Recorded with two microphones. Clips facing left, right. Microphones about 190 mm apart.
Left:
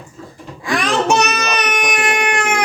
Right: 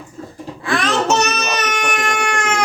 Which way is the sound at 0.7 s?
15° left (ahead or behind).